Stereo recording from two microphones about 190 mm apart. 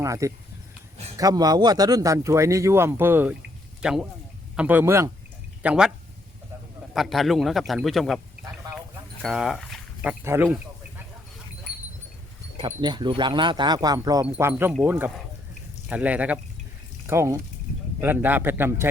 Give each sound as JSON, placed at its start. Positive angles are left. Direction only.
{"t": 0.0, "sound": "speech", "side_deg": -15}
{"t": 5.6, "sound": "speech", "side_deg": -5}
{"t": 6.9, "sound": "speech", "side_deg": 0}
{"t": 12.5, "sound": "speech", "side_deg": -25}